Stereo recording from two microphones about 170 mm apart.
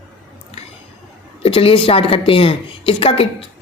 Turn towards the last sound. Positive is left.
turn(degrees=35)  # may be behind; listen again after turning